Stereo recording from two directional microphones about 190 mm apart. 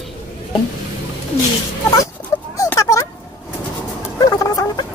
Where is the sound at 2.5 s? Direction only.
15° left (ahead or behind).